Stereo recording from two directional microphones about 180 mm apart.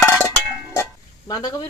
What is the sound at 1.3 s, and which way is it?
Speech, 20° left (ahead or behind).